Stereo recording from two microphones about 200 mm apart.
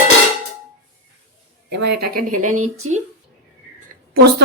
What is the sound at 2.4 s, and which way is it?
Speech, 90° right.